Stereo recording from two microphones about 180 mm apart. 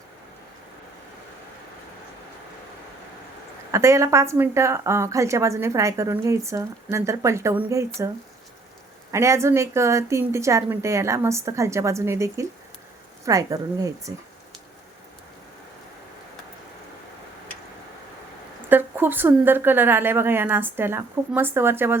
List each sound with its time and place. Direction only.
3.7 s a woman's voice: 15° right (ahead or behind)
9.1 s a woman's voice: 15° right (ahead or behind)
18.7 s a woman's voice: 10° right (ahead or behind)